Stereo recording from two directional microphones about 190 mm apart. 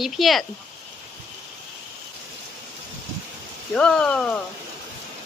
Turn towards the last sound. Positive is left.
turn(degrees=5)  # may be behind; listen again after turning